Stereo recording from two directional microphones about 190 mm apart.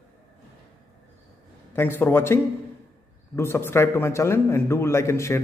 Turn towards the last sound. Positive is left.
turn(degrees=15)  # may be behind; listen again after turning